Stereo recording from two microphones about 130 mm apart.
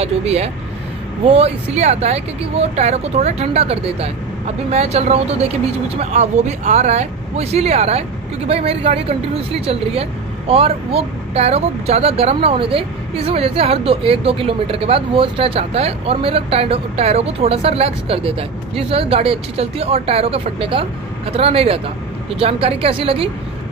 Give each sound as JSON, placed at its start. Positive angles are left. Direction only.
{"t": 0.0, "sound": "speech", "side_deg": -55}